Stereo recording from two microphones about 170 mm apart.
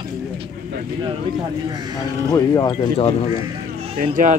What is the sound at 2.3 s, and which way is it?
Speech, 20° left (ahead or behind).